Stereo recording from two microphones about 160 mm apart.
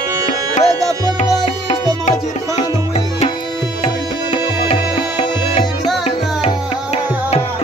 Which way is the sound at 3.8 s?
40° left (ahead or behind).